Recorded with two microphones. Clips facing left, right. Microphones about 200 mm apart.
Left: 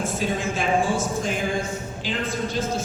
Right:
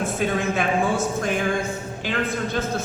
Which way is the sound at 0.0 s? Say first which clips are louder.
Right 2 dB; 60° right (ahead or behind).